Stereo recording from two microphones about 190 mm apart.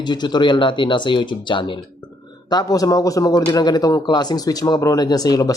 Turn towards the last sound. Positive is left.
turn(degrees=20)  # may be behind; listen again after turning